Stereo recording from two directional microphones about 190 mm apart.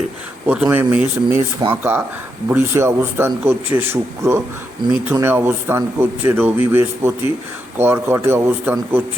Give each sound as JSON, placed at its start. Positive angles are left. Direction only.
{"t": 0.4, "sound": "speech", "side_deg": -10}